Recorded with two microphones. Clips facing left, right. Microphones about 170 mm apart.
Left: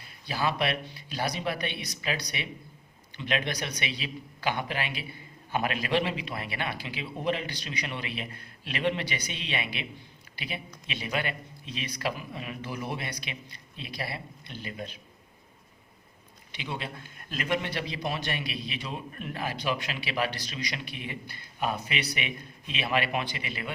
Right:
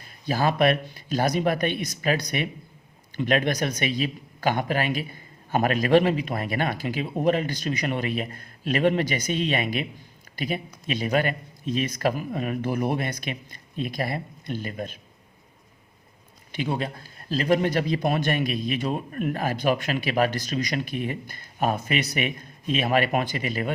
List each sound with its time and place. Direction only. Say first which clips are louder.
0.0 s a man's voice: right 6 dB; 45° right (ahead or behind)
16.5 s a man's voice: right 9 dB; 45° right (ahead or behind)